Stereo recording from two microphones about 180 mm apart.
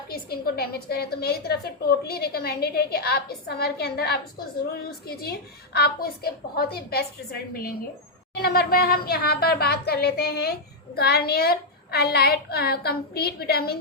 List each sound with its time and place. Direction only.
0.1 s a woman's voice: 60° left (ahead or behind)